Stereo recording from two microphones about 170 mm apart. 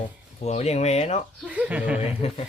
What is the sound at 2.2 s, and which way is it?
Speech, 40° left (ahead or behind).